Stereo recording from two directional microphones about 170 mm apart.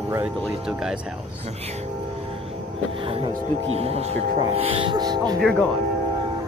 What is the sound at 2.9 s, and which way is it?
Speech, 35° right (ahead or behind).